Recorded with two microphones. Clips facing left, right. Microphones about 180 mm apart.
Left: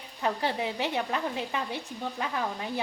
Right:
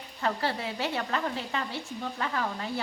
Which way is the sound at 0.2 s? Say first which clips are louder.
Left 1 dB; 15° left (ahead or behind).